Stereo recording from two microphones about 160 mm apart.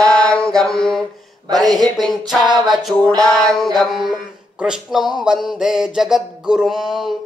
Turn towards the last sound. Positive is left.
turn(degrees=0)  # may be behind; listen again after turning